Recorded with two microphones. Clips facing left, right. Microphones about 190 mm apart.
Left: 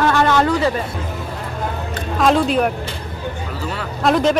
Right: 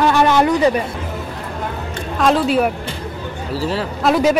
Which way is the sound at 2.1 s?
Centre (ahead or behind).